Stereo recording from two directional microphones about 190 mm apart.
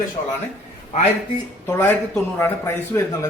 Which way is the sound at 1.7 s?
10° left (ahead or behind).